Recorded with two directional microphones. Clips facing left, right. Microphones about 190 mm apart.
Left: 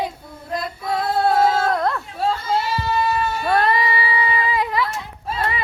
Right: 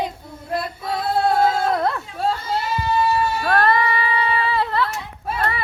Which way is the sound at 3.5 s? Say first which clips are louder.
Even; 15° left (ahead or behind).